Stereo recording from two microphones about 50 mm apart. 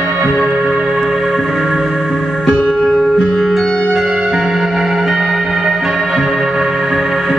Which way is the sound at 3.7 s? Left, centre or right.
Centre.